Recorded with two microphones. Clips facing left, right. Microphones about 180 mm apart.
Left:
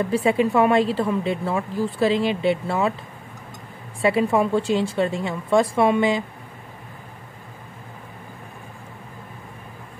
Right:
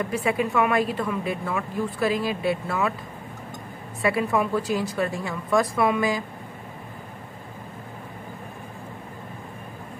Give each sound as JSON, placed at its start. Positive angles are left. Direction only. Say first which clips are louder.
{"t": 0.0, "sound": "a woman's voice", "louder": "left 5 dB", "side_deg": 30}
{"t": 4.0, "sound": "a woman's voice", "louder": "left 4 dB", "side_deg": 25}